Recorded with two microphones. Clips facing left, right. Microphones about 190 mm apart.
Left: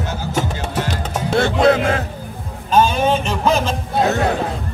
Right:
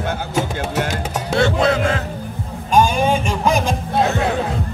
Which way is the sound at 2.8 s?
10° right (ahead or behind).